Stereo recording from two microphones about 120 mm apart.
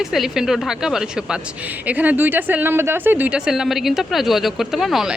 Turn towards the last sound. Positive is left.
turn(degrees=0)  # may be behind; listen again after turning